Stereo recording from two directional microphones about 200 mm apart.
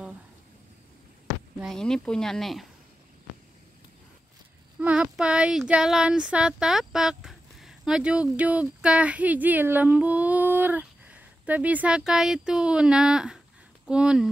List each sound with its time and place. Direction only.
1.6 s speech: centre (ahead or behind)
4.7 s speech: 5° right (ahead or behind)